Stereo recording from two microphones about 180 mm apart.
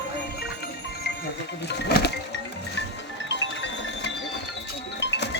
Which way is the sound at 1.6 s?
70° left (ahead or behind).